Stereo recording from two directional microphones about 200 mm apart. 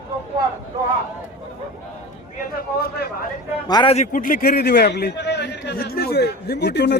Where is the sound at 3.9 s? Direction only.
40° left (ahead or behind).